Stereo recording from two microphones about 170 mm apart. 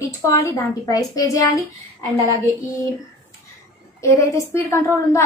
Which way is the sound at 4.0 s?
15° left (ahead or behind).